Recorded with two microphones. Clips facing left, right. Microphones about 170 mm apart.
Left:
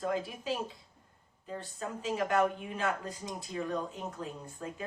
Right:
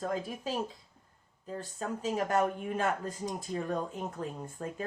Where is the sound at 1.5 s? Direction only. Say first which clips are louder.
Right 2 dB; 40° right (ahead or behind).